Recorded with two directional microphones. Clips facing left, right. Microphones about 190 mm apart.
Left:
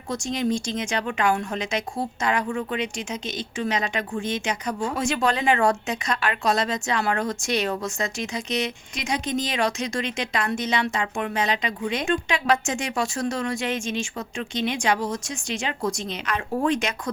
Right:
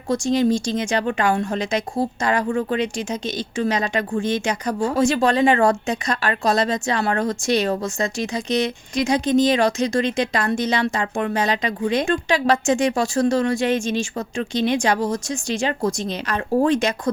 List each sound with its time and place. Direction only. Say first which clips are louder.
0.1 s a woman's voice: right 7 dB; 35° right (ahead or behind)